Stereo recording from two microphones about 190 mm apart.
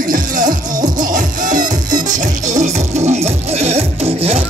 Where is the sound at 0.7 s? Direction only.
20° right (ahead or behind).